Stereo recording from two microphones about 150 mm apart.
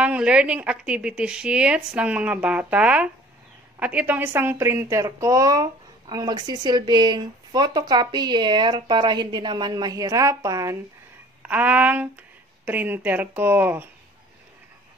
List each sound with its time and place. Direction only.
0.0 s a woman's voice: 10° right (ahead or behind)
11.4 s a woman's voice: 10° right (ahead or behind)